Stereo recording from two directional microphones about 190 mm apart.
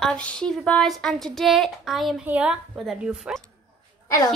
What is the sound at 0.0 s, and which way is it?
Speech, 5° left (ahead or behind).